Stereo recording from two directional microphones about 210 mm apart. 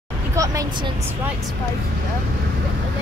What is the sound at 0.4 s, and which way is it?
Speech, 15° right (ahead or behind).